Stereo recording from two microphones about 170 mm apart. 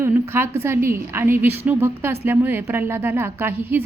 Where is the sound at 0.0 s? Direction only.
15° right (ahead or behind).